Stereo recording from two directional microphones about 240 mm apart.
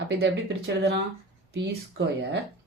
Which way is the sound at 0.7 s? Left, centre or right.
Right.